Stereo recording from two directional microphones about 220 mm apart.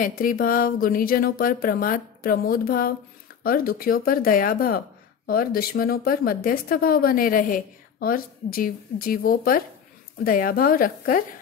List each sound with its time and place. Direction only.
0.0 s speech: 40° left (ahead or behind)